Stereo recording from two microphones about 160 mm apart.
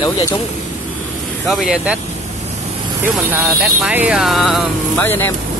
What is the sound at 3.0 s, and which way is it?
Speech, 15° right (ahead or behind).